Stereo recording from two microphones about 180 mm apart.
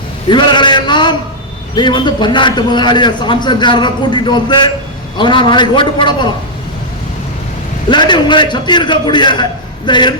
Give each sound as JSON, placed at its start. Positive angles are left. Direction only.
{"t": 0.3, "sound": "a man's voice", "side_deg": 25}
{"t": 7.9, "sound": "a man's voice", "side_deg": 25}